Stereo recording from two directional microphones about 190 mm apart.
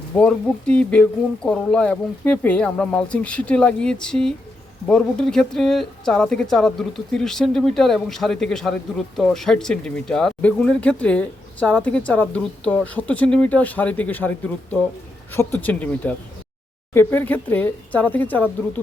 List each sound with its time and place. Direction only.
0.2 s speech: 5° left (ahead or behind)